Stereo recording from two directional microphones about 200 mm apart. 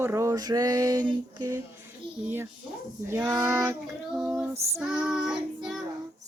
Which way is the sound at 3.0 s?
15° right (ahead or behind).